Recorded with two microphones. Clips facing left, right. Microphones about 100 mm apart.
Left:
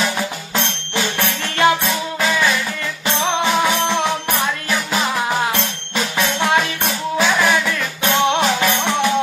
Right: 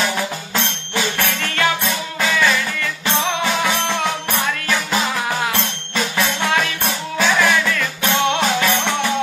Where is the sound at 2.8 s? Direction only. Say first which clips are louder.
Even; 25° left (ahead or behind).